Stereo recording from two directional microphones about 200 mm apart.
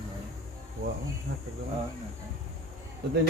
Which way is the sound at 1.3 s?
60° right (ahead or behind).